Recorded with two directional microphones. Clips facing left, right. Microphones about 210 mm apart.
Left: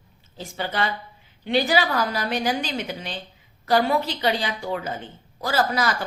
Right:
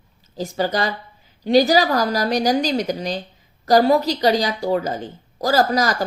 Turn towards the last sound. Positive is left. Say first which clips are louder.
# right 5 dB
turn(degrees=-40)  # may be behind; listen again after turning